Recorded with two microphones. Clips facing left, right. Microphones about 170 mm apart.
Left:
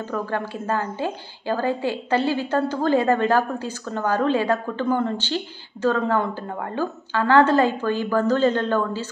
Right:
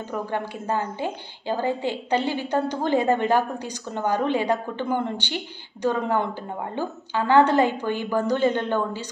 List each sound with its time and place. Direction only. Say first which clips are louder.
0.1 s a woman's voice: left 1 dB; 20° right (ahead or behind)